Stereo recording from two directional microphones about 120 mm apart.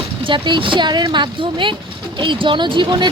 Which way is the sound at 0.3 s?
45° right (ahead or behind).